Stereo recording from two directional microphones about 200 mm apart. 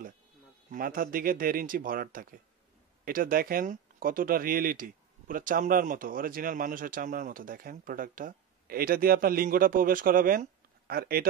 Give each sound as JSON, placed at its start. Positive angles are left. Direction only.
{"t": 0.7, "sound": "speech", "side_deg": -45}